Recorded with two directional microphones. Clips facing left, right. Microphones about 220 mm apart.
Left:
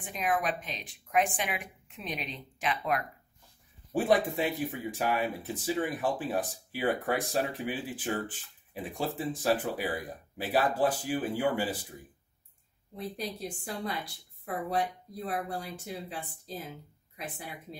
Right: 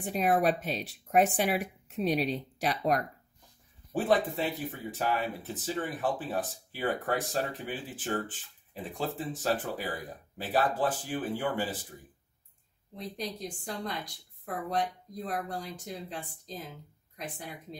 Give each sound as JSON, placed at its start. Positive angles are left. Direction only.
{"t": 0.0, "sound": "speech", "side_deg": -40}
{"t": 3.9, "sound": "a woman's voice", "side_deg": 10}
{"t": 12.9, "sound": "a woman's voice", "side_deg": 5}